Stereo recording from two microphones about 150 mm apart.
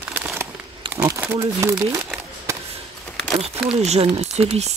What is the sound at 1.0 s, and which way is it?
Speech, 15° right (ahead or behind).